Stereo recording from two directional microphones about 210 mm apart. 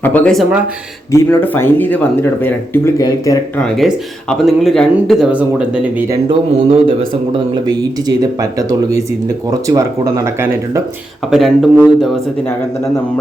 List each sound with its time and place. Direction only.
0.0 s speech: 10° left (ahead or behind)
1.1 s speech: 10° left (ahead or behind)
3.8 s speech: centre (ahead or behind)
6.2 s a man's voice: 25° right (ahead or behind)
11.3 s speech: centre (ahead or behind)